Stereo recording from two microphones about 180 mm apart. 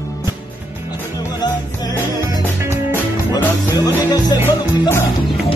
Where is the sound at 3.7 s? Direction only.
20° left (ahead or behind).